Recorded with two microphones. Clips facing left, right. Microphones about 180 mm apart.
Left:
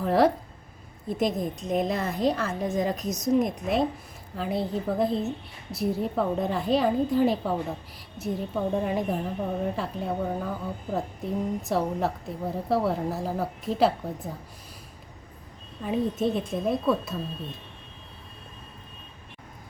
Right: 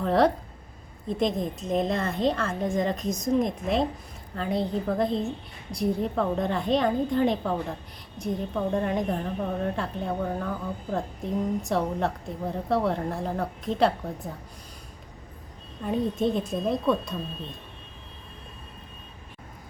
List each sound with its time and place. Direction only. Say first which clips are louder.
0.0 s a woman's voice: even; 5° left (ahead or behind)
15.8 s a woman's voice: even; 5° left (ahead or behind)